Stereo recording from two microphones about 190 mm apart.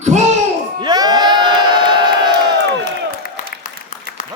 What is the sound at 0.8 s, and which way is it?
Crowd, 20° right (ahead or behind).